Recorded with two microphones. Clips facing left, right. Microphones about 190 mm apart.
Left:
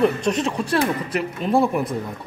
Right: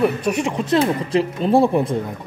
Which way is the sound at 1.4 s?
30° right (ahead or behind).